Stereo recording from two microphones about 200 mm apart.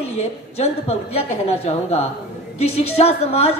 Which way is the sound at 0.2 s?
30° left (ahead or behind).